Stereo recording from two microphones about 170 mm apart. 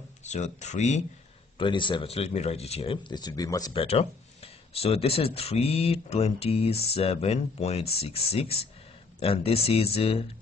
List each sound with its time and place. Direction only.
0.2 s speech: 45° left (ahead or behind)
1.6 s speech: 30° left (ahead or behind)
3.7 s speech: 40° left (ahead or behind)